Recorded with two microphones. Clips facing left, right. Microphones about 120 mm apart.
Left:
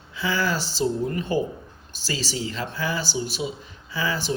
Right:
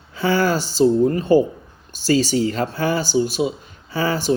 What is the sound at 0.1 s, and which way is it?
Speech, 45° right (ahead or behind).